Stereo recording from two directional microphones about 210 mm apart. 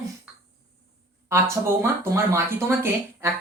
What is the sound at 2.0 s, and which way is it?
Speech, 10° right (ahead or behind).